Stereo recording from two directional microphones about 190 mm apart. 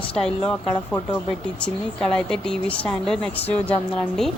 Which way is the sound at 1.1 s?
5° left (ahead or behind).